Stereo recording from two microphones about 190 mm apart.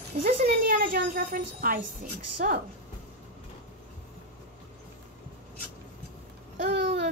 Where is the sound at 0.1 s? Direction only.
50° right (ahead or behind).